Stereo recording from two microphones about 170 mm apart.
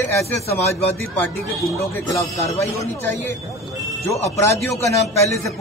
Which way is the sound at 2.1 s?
20° left (ahead or behind).